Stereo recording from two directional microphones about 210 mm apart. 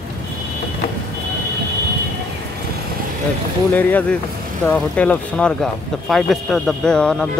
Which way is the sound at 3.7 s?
10° left (ahead or behind).